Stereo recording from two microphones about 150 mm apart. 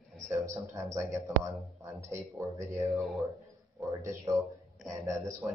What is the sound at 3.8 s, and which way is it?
Speech, 20° right (ahead or behind).